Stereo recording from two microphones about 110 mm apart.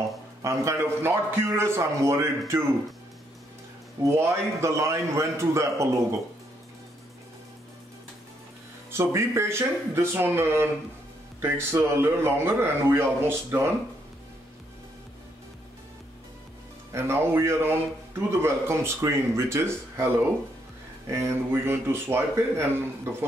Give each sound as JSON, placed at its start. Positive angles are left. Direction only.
{"t": 0.4, "sound": "a man's voice", "side_deg": -25}
{"t": 4.0, "sound": "a man's voice", "side_deg": -25}
{"t": 8.9, "sound": "a man's voice", "side_deg": -25}
{"t": 16.9, "sound": "a man's voice", "side_deg": -25}